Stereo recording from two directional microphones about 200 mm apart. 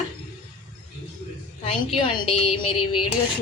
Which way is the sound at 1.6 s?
25° left (ahead or behind).